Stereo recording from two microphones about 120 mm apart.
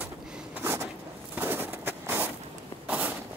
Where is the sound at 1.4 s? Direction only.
15° right (ahead or behind).